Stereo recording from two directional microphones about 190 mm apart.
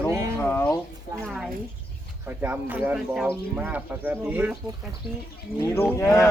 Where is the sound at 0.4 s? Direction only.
10° left (ahead or behind).